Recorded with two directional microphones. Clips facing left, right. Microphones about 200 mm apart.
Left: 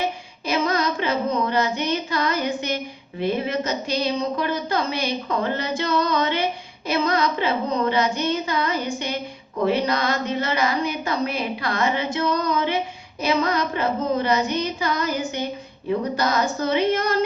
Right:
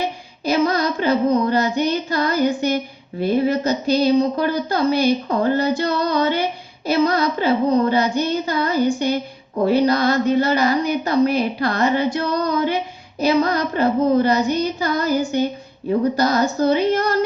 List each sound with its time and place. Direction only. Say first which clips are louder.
0.7 s female singing: right 4 dB; 35° right (ahead or behind)
3.2 s a woman's voice: right 5 dB; 35° right (ahead or behind)